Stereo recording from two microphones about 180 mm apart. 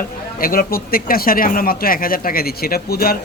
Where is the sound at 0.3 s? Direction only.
55° left (ahead or behind).